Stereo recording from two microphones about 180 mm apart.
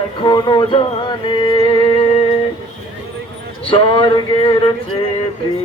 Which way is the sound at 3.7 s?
30° left (ahead or behind).